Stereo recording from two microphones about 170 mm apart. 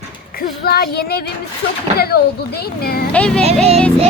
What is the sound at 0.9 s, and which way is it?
Speech, 70° left (ahead or behind).